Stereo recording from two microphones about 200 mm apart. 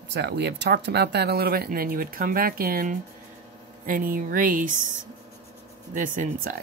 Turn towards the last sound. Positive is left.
turn(degrees=-40)  # may be behind; listen again after turning